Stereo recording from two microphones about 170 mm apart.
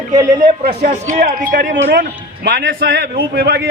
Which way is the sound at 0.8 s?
50° right (ahead or behind).